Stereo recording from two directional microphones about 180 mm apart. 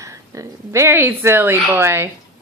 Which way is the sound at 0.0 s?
15° right (ahead or behind).